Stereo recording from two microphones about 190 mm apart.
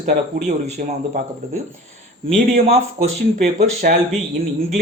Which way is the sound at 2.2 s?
35° right (ahead or behind).